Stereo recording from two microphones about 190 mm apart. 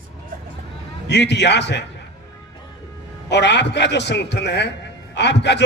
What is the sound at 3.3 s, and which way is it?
A man's voice, 65° left (ahead or behind).